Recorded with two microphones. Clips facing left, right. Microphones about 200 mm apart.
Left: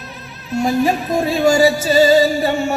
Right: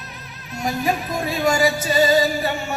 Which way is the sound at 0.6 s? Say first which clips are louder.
Left 5 dB; 30° left (ahead or behind).